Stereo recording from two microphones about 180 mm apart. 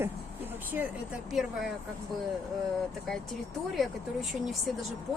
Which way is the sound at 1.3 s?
Centre (ahead or behind).